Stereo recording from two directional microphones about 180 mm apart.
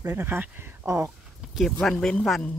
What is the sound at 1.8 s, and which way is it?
Speech, 5° left (ahead or behind).